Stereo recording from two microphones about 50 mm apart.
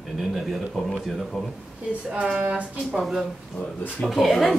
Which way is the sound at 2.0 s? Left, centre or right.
Centre.